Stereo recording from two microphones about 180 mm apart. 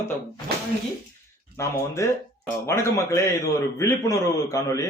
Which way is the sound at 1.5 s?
15° left (ahead or behind).